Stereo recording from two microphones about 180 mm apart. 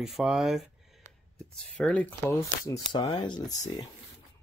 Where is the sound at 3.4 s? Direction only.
40° left (ahead or behind).